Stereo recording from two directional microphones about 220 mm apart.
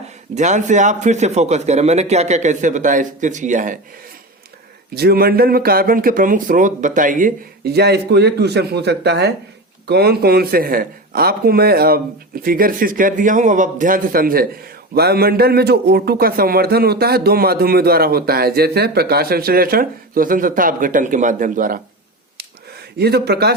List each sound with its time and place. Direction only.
0.3 s speech: 35° right (ahead or behind)
4.9 s a man's voice: 45° right (ahead or behind)
23.0 s a man's voice: 45° right (ahead or behind)